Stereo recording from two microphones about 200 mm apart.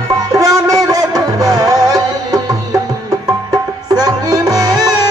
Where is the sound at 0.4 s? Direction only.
15° right (ahead or behind).